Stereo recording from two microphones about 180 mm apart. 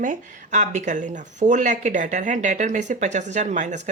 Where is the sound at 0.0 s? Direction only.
45° right (ahead or behind).